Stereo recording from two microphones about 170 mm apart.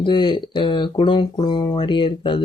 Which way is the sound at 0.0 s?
30° left (ahead or behind).